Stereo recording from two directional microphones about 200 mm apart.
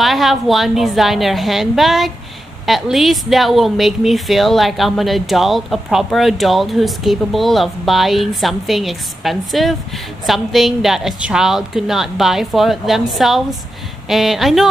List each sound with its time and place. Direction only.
0.0 s speech: centre (ahead or behind)